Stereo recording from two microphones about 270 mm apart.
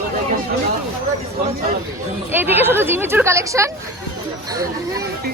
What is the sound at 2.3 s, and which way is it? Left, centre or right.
Speech, centre.